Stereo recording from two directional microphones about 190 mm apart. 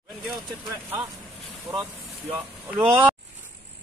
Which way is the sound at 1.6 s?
20° right (ahead or behind).